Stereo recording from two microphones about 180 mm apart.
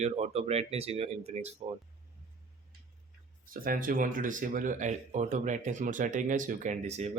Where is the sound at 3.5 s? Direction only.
50° right (ahead or behind).